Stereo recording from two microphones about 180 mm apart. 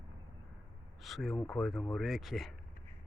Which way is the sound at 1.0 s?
Centre (ahead or behind).